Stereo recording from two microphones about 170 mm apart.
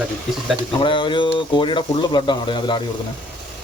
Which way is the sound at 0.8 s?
30° left (ahead or behind).